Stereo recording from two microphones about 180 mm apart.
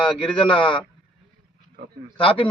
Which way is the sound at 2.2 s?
30° left (ahead or behind).